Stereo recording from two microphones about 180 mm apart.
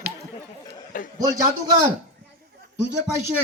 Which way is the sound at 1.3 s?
20° right (ahead or behind).